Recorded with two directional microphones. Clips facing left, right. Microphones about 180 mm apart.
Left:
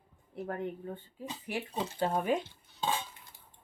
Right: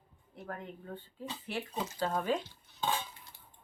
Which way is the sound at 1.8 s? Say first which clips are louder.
Left 2 dB; 30° left (ahead or behind).